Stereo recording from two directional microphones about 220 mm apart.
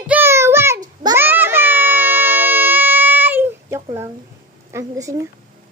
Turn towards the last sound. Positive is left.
turn(degrees=-15)  # may be behind; listen again after turning